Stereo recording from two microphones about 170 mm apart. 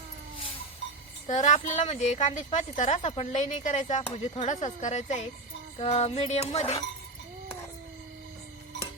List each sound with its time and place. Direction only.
1.3 s a woman's voice: 45° left (ahead or behind)
5.7 s music: 40° left (ahead or behind)